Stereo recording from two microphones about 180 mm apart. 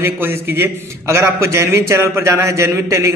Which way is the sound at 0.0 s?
10° right (ahead or behind).